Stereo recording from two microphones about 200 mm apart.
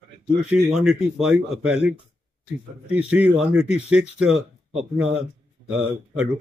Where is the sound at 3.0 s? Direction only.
5° right (ahead or behind).